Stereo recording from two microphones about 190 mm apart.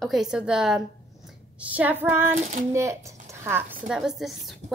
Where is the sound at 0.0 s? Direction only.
Centre (ahead or behind).